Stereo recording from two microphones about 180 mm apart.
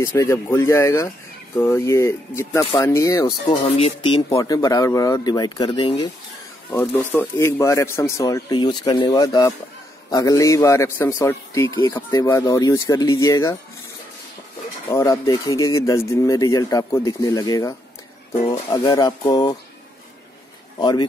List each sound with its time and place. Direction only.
0.0 s a man's voice: 15° left (ahead or behind)
6.7 s a man's voice: 10° left (ahead or behind)
14.9 s speech: 25° left (ahead or behind)
20.8 s speech: 25° left (ahead or behind)